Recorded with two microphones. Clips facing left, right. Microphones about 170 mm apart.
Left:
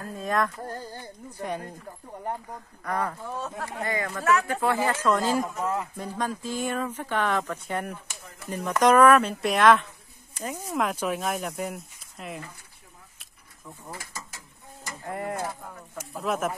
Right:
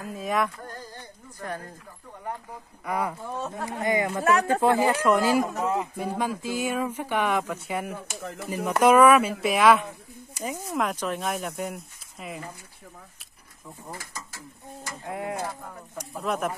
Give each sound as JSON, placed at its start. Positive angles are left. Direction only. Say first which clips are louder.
{"t": 0.0, "sound": "speech", "louder": "even", "side_deg": -5}
{"t": 0.6, "sound": "a sound", "louder": "left 4 dB", "side_deg": 30}
{"t": 1.4, "sound": "speech", "louder": "left 3 dB", "side_deg": 15}
{"t": 2.8, "sound": "speech", "louder": "right 1 dB", "side_deg": -10}
{"t": 7.9, "sound": "speech", "louder": "right 7 dB", "side_deg": -75}
{"t": 8.6, "sound": "speech", "louder": "right 1 dB", "side_deg": -10}
{"t": 15.0, "sound": "speech", "louder": "even", "side_deg": 0}